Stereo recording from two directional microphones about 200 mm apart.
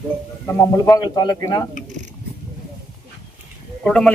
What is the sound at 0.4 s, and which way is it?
Speech, 10° left (ahead or behind).